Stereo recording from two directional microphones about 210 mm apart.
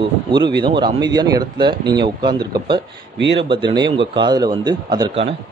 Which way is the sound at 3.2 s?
60° right (ahead or behind).